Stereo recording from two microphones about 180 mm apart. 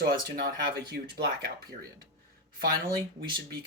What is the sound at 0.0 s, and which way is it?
Speech, 60° right (ahead or behind).